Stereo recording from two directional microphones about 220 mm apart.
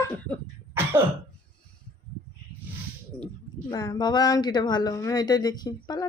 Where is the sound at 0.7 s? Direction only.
10° right (ahead or behind).